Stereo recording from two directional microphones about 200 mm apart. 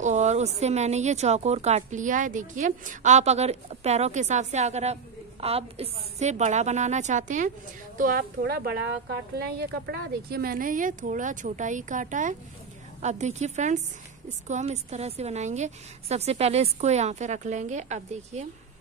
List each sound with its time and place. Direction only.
0.0 s speech: 35° right (ahead or behind)